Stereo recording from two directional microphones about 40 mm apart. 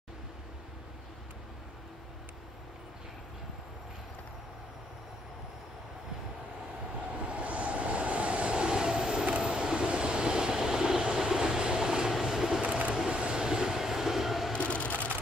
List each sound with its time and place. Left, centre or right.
7.2 s vehicle: right
11.1 s train: centre
12.2 s vehicle: centre
12.6 s a sound: right
13.1 s train: right
13.5 s train: centre
14.6 s a sound: left